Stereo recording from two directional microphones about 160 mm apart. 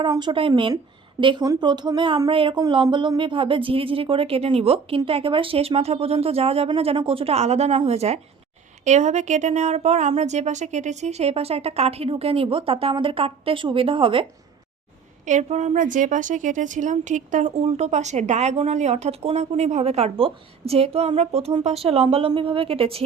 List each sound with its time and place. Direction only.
0.0 s speech: 30° right (ahead or behind)
15.3 s a woman's voice: 45° right (ahead or behind)